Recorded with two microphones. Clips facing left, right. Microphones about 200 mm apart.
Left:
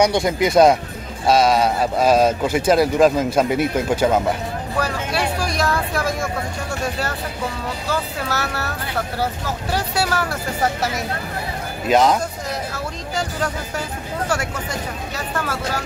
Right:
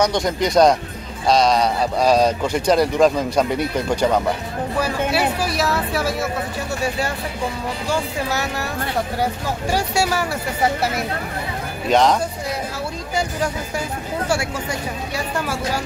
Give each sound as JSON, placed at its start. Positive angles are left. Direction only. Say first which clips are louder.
{"t": 0.0, "sound": "speech", "louder": "left 2 dB", "side_deg": 10}
{"t": 4.7, "sound": "speech", "louder": "right 3 dB", "side_deg": -10}
{"t": 11.9, "sound": "speech", "louder": "even", "side_deg": 5}
{"t": 14.2, "sound": "speech", "louder": "right 1 dB", "side_deg": -10}